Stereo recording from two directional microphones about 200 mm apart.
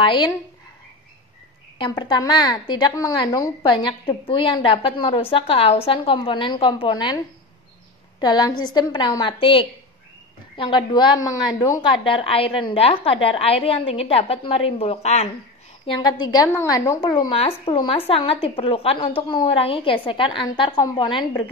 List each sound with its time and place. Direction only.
0.0 s a woman's voice: 25° left (ahead or behind)
1.8 s a woman's voice: 20° left (ahead or behind)
8.2 s a woman's voice: 20° left (ahead or behind)
16.0 s a woman's voice: 20° left (ahead or behind)